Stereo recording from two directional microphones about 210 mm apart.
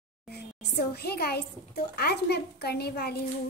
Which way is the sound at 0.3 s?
50° left (ahead or behind).